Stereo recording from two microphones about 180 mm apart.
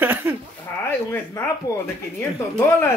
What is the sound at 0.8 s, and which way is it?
Speech, 10° left (ahead or behind).